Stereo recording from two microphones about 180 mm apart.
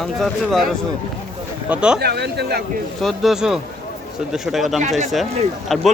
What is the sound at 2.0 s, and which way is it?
Speech, 65° right (ahead or behind).